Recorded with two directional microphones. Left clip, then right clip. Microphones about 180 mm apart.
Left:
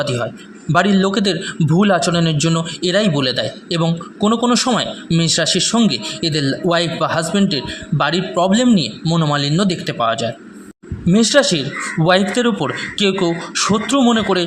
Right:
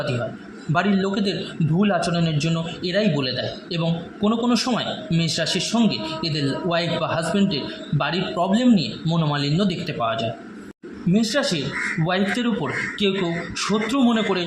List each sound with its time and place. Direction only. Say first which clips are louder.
0.7 s a man's voice: left 7 dB; 40° left (ahead or behind)